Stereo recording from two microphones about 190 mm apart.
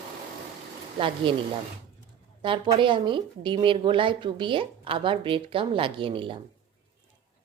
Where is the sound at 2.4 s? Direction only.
25° right (ahead or behind).